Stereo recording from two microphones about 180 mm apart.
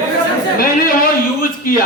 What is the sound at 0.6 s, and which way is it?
Speech, 55° left (ahead or behind).